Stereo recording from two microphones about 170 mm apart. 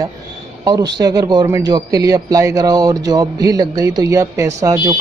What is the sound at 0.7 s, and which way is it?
A man's voice, 25° right (ahead or behind).